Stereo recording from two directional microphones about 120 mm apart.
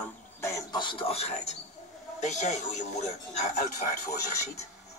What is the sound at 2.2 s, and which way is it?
Speech, 85° left.